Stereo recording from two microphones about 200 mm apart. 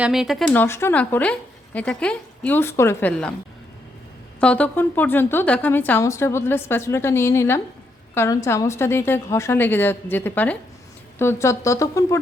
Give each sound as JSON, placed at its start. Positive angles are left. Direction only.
{"t": 0.0, "sound": "speech", "side_deg": 0}
{"t": 4.4, "sound": "speech", "side_deg": 5}